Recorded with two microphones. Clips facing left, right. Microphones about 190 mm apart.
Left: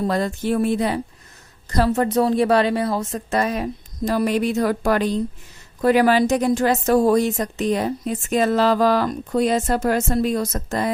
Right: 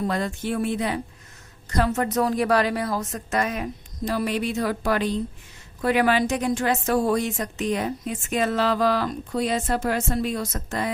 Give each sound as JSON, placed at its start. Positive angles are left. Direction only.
{"t": 0.1, "sound": "a woman's voice", "side_deg": 40}